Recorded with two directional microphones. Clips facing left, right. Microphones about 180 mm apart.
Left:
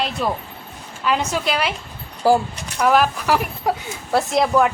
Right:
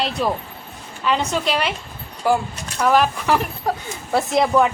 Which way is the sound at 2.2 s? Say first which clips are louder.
Left 3 dB; 35° left (ahead or behind).